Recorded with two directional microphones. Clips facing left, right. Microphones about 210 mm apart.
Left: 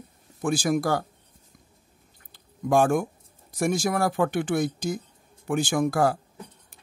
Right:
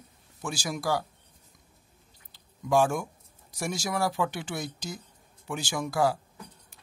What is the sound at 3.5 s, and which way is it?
Speech, 50° left (ahead or behind).